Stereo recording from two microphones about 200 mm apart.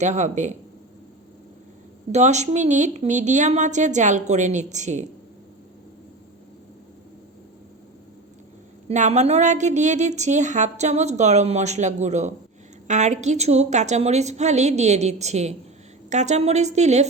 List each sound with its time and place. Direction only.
0.0 s a woman's voice: 35° right (ahead or behind)
2.1 s a woman's voice: 35° right (ahead or behind)
8.9 s a woman's voice: 35° right (ahead or behind)